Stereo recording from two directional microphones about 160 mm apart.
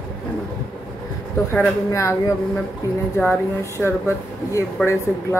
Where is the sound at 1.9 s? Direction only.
20° left (ahead or behind).